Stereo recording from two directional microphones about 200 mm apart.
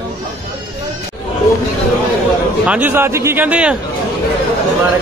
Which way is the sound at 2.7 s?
10° right (ahead or behind).